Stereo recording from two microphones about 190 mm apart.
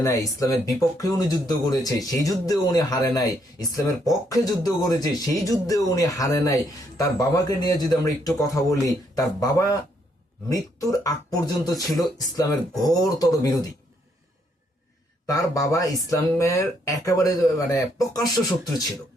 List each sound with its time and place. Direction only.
0.0 s speech: 15° left (ahead or behind)
15.3 s speech: 20° left (ahead or behind)